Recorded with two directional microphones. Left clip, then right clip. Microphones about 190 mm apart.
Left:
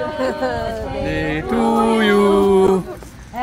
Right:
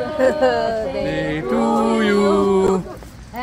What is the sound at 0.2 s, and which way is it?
Speech, 35° right (ahead or behind).